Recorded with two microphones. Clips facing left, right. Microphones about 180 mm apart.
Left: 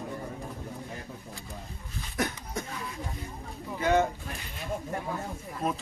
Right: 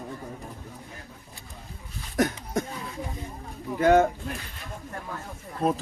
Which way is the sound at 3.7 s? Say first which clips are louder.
Right 6 dB; 50° right (ahead or behind).